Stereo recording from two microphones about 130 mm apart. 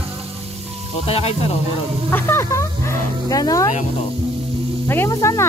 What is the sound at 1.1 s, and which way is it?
Speech, 50° left (ahead or behind).